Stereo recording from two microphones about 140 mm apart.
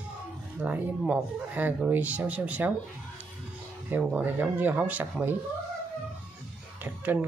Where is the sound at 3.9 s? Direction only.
5° right (ahead or behind).